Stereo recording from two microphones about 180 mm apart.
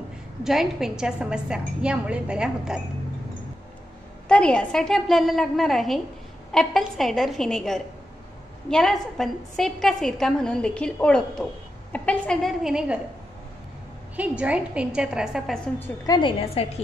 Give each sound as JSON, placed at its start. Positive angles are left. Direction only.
{"t": 0.4, "sound": "a woman's voice", "side_deg": 0}
{"t": 4.3, "sound": "a woman's voice", "side_deg": 5}
{"t": 14.1, "sound": "a woman's voice", "side_deg": -5}
{"t": 15.8, "sound": "a woman's voice", "side_deg": 25}